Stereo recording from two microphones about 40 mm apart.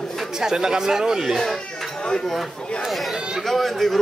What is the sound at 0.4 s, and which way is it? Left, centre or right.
Speech, centre.